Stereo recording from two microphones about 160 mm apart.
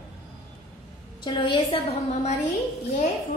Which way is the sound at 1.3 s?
30° left (ahead or behind).